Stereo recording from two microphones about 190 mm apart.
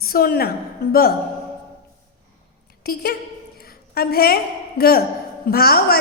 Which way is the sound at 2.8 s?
55° left (ahead or behind).